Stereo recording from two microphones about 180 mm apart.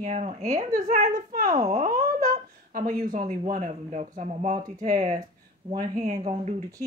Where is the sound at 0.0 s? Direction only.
40° right (ahead or behind).